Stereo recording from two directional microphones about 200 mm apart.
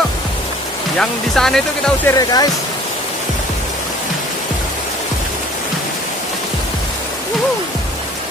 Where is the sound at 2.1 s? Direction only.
20° left (ahead or behind).